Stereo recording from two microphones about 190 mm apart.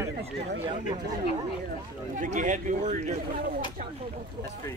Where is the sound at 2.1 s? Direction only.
40° right (ahead or behind).